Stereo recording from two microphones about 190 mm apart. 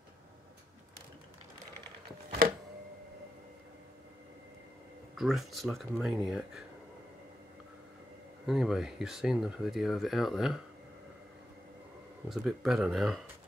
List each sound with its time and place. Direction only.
2.4 s a sound: 50° right (ahead or behind)
5.1 s speech: centre (ahead or behind)
8.5 s speech: centre (ahead or behind)
12.3 s speech: centre (ahead or behind)